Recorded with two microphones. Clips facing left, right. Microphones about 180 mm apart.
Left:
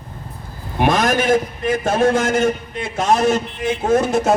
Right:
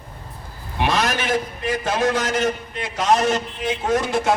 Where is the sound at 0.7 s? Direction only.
50° left (ahead or behind).